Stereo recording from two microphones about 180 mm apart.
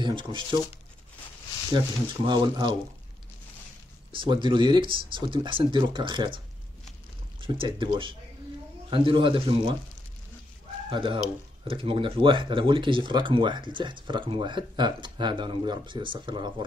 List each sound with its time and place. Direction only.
0.0 s speech: 25° right (ahead or behind)
2.2 s speech: 25° right (ahead or behind)
4.1 s speech: 25° right (ahead or behind)
10.9 s speech: 25° right (ahead or behind)